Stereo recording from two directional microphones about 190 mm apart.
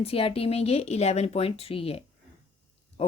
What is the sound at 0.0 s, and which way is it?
Speech, 30° left (ahead or behind).